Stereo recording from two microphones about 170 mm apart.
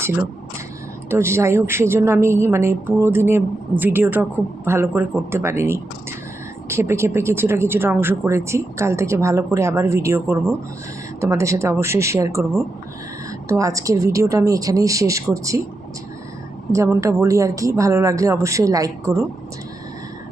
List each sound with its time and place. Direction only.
1.1 s a woman's voice: 15° right (ahead or behind)
13.5 s a woman's voice: 20° right (ahead or behind)
16.7 s a woman's voice: 15° right (ahead or behind)